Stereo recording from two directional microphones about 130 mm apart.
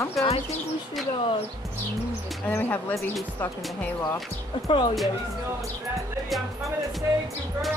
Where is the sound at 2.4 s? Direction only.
15° left (ahead or behind).